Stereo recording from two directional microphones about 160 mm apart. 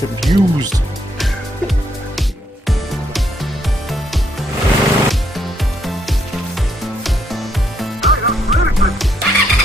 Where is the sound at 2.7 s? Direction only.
Centre (ahead or behind).